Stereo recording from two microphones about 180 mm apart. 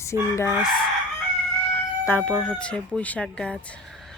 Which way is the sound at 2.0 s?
5° left (ahead or behind).